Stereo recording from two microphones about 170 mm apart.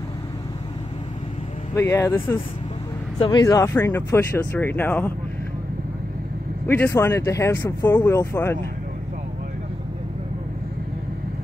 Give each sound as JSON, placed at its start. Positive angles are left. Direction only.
{"t": 1.8, "sound": "speech", "side_deg": 15}
{"t": 3.2, "sound": "speech", "side_deg": 25}
{"t": 6.7, "sound": "speech", "side_deg": 15}